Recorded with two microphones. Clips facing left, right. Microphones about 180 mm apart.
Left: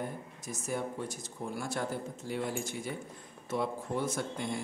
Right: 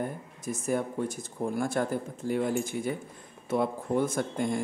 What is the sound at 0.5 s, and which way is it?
Speech, 55° right (ahead or behind).